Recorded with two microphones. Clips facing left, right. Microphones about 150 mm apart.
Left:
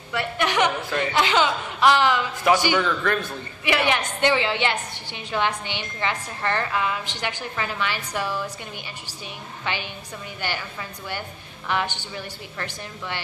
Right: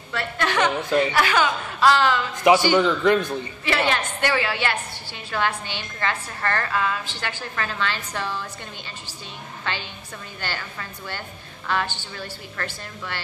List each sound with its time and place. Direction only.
0.1 s a woman's voice: 15° left (ahead or behind)
0.8 s speech: 20° right (ahead or behind)
1.1 s a woman's voice: 20° left (ahead or behind)
2.7 s a man's voice: 20° right (ahead or behind)
3.6 s a woman's voice: 15° left (ahead or behind)
9.7 s a woman's voice: 15° left (ahead or behind)